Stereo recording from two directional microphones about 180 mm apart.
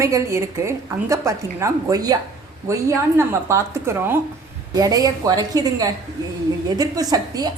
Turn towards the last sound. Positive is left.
turn(degrees=-20)  # may be behind; listen again after turning